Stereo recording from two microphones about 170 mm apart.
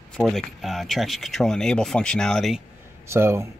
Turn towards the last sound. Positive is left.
turn(degrees=-15)  # may be behind; listen again after turning